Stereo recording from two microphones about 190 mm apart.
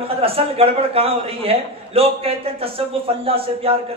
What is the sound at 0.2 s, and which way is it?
A man's voice, 30° right (ahead or behind).